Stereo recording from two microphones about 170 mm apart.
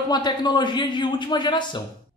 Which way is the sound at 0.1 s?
25° left (ahead or behind).